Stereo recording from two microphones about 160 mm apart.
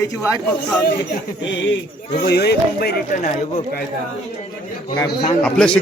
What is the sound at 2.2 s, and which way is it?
Speech, 90° left.